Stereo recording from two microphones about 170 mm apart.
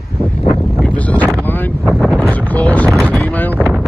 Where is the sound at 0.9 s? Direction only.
10° left (ahead or behind).